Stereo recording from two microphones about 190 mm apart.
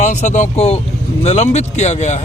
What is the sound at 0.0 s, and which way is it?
Speech, 40° left (ahead or behind).